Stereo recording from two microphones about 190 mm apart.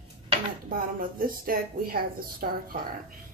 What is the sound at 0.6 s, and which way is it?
A woman's voice, 50° right (ahead or behind).